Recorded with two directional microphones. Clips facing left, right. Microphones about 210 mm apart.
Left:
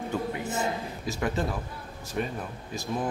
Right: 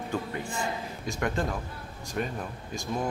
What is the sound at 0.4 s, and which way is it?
Speech, 20° left (ahead or behind).